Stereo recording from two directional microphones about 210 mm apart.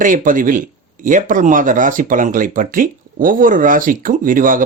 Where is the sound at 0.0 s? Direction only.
40° right (ahead or behind).